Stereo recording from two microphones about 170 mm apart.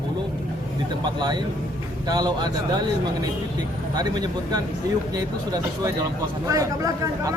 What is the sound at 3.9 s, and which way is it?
Speech, 25° right (ahead or behind).